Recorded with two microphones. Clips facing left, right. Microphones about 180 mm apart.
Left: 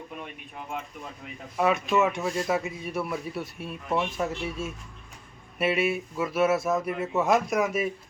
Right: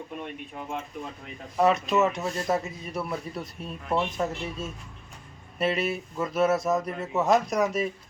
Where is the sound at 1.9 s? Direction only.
10° left (ahead or behind).